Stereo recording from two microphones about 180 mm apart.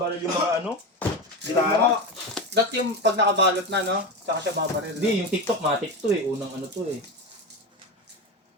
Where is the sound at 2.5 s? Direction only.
70° right (ahead or behind).